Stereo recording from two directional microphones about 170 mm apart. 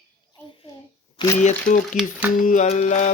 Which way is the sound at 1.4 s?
45° left (ahead or behind).